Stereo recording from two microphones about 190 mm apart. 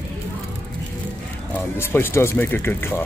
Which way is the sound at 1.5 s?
10° left (ahead or behind).